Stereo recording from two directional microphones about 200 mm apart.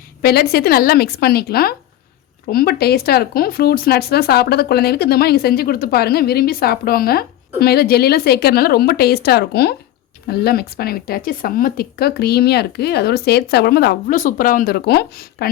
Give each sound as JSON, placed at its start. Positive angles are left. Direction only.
{"t": 0.2, "sound": "speech", "side_deg": 50}